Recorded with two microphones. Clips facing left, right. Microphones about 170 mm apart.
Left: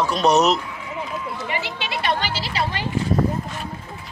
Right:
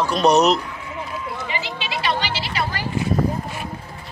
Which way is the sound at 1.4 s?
60° left (ahead or behind).